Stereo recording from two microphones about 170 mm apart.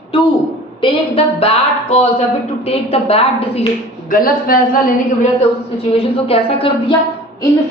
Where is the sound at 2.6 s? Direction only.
35° left (ahead or behind).